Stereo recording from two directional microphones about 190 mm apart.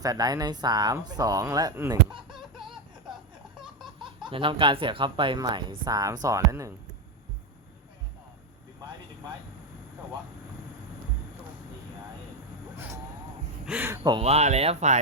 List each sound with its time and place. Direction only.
0.0 s speech: 20° right (ahead or behind)
4.2 s speech: 25° right (ahead or behind)
12.7 s a sound: 10° right (ahead or behind)
13.7 s speech: 10° right (ahead or behind)
14.2 s speech: 35° right (ahead or behind)